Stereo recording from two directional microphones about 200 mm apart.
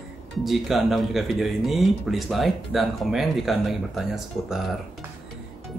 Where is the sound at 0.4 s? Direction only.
Centre (ahead or behind).